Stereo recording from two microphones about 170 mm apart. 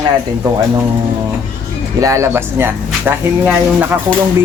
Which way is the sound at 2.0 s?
15° right (ahead or behind).